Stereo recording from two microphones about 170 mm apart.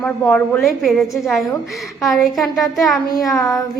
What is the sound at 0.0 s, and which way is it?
A woman's voice, 10° left (ahead or behind).